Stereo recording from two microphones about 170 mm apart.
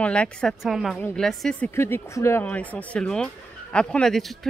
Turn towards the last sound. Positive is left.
turn(degrees=0)  # may be behind; listen again after turning